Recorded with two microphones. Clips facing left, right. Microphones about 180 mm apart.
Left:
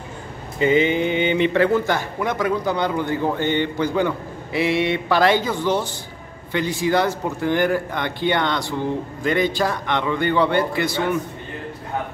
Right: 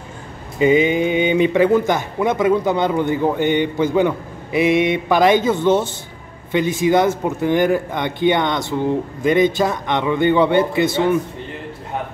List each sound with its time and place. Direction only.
0.6 s a man's voice: 15° right (ahead or behind)